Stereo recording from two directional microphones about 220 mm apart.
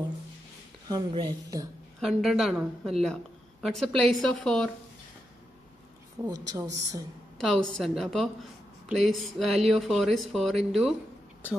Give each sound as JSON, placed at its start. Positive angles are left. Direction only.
{"t": 0.8, "sound": "speech", "side_deg": -20}
{"t": 2.0, "sound": "a woman's voice", "side_deg": 0}
{"t": 6.2, "sound": "a woman's voice", "side_deg": -15}
{"t": 7.3, "sound": "a woman's voice", "side_deg": 0}